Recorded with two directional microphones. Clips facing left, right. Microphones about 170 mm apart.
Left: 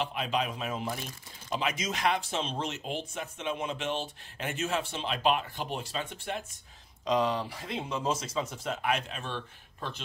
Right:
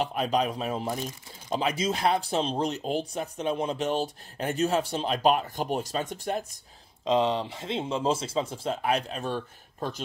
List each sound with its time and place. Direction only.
0.0 s speech: 40° right (ahead or behind)
7.1 s speech: 25° right (ahead or behind); by 10.0 s 40° right (ahead or behind)